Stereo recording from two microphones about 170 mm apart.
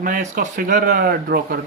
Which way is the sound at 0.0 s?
50° right (ahead or behind).